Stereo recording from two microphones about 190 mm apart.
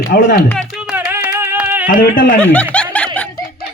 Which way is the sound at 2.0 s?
45° left (ahead or behind).